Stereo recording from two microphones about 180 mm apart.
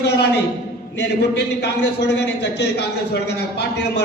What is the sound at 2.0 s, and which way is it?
Speech, 70° left (ahead or behind).